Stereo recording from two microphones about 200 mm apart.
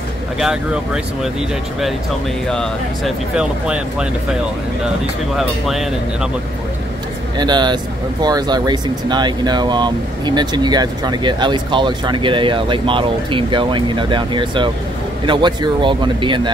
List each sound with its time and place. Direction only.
0.4 s speech: 5° right (ahead or behind)
2.4 s speech: centre (ahead or behind)
5.4 s speech: centre (ahead or behind)
7.3 s speech: 20° right (ahead or behind)